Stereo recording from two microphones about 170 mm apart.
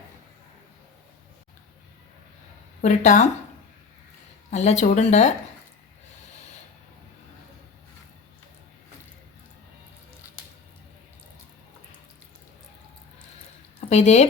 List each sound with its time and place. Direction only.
2.8 s speech: 45° left (ahead or behind)
4.5 s speech: 40° left (ahead or behind)
13.9 s speech: 40° left (ahead or behind)